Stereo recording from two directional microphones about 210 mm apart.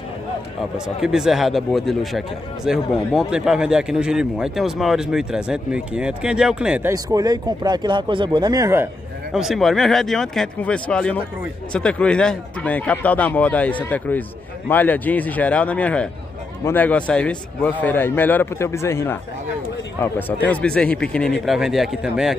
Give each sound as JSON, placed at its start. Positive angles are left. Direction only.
{"t": 0.7, "sound": "speech", "side_deg": -5}
{"t": 6.9, "sound": "speech", "side_deg": -15}
{"t": 9.3, "sound": "speech", "side_deg": 0}